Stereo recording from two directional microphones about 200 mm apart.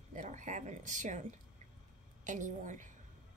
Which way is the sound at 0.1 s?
40° right (ahead or behind).